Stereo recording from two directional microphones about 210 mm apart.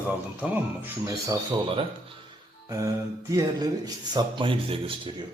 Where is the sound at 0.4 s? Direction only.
10° right (ahead or behind); by 5.1 s 25° right (ahead or behind).